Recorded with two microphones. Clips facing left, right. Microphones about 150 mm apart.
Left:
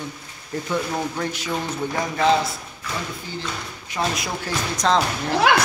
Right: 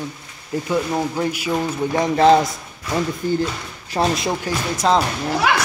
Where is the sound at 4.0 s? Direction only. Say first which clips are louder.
Right 5 dB; 40° right (ahead or behind).